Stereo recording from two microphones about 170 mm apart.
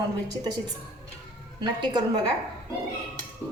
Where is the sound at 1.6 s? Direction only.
25° right (ahead or behind).